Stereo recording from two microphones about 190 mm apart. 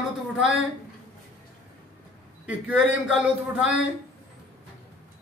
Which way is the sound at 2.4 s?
5° right (ahead or behind).